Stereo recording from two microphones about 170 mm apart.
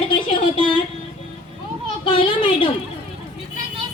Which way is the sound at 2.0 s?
30° left (ahead or behind).